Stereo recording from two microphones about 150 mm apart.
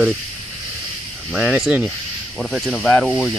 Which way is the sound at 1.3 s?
5° right (ahead or behind).